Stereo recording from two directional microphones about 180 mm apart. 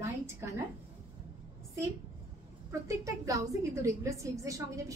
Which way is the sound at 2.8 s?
20° right (ahead or behind).